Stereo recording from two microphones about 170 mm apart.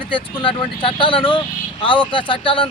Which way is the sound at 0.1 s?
30° left (ahead or behind).